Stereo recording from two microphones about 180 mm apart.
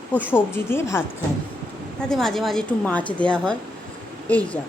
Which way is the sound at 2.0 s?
5° left (ahead or behind).